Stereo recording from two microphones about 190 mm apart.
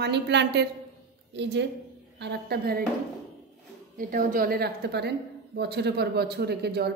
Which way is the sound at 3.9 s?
45° right (ahead or behind).